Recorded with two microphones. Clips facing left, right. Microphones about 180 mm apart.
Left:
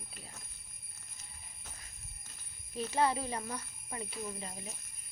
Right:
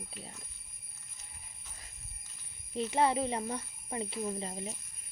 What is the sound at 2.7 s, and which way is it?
Speech, 25° right (ahead or behind).